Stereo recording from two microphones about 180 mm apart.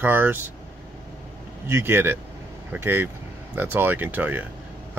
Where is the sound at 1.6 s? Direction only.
15° right (ahead or behind).